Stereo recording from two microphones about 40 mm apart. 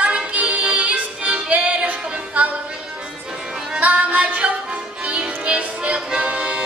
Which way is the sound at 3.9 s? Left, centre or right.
Right.